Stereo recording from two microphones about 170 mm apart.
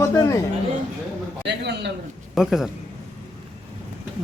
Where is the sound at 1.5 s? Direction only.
85° right.